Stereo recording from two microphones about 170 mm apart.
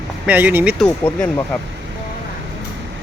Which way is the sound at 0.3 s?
10° right (ahead or behind).